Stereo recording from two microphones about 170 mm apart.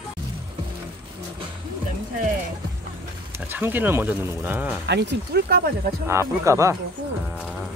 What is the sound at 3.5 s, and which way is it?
Speech, 10° right (ahead or behind).